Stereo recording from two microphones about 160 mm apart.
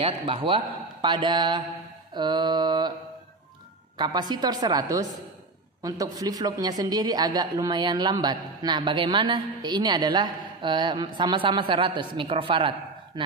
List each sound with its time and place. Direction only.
0.0 s a man's voice: 35° right (ahead or behind)
4.0 s a woman's voice: 25° right (ahead or behind)